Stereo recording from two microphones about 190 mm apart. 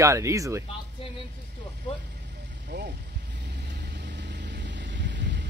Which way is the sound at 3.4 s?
60° right (ahead or behind).